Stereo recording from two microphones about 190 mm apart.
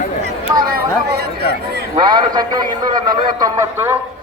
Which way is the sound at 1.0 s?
55° right (ahead or behind).